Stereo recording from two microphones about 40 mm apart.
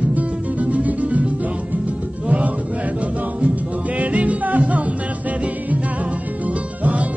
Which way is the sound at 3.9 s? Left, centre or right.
Right.